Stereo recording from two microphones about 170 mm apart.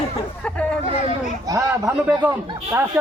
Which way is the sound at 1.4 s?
20° right (ahead or behind).